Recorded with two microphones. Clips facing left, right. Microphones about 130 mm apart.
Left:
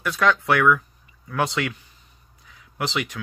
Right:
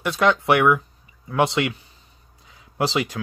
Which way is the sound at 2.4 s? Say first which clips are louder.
Right 5 dB; 25° right (ahead or behind).